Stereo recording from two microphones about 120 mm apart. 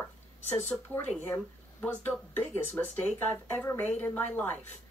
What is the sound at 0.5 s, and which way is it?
Speech, 15° left (ahead or behind).